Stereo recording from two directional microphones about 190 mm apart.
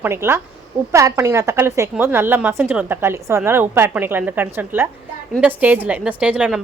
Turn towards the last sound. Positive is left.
turn(degrees=-5)  # may be behind; listen again after turning